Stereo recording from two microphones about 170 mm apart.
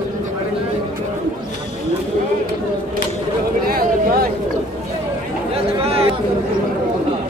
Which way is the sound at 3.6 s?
60° right (ahead or behind).